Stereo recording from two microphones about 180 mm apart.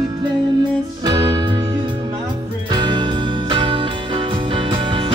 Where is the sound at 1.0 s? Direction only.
20° right (ahead or behind).